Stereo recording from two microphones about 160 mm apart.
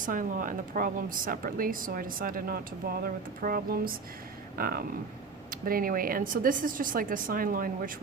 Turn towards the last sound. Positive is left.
turn(degrees=-60)  # may be behind; listen again after turning